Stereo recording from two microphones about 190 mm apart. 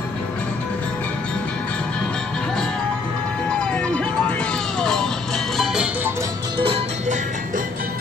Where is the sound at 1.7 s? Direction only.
5° left (ahead or behind).